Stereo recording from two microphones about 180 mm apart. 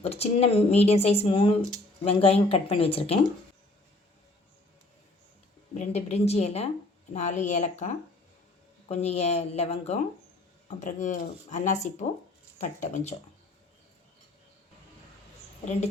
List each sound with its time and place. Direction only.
0.0 s speech: 35° left (ahead or behind)
5.7 s speech: 40° left (ahead or behind)